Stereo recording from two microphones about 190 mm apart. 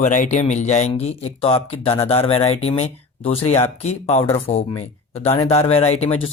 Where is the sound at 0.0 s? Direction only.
40° left (ahead or behind).